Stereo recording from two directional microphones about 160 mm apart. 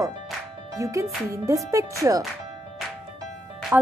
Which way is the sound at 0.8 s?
20° right (ahead or behind).